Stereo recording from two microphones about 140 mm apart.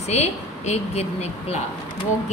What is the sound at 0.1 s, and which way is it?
A woman's voice, 50° left (ahead or behind).